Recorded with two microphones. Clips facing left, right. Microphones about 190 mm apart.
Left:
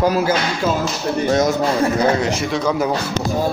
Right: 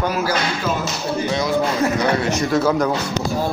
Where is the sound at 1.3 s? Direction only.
45° left (ahead or behind).